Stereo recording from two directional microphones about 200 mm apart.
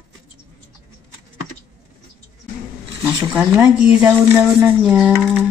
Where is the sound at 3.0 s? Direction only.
10° right (ahead or behind).